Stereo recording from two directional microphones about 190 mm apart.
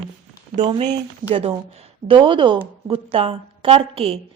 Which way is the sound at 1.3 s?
30° right (ahead or behind).